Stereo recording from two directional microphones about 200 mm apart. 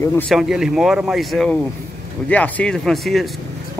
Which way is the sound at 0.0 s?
10° left (ahead or behind).